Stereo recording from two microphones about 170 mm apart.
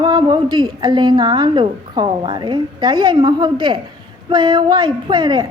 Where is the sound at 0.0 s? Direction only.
25° right (ahead or behind).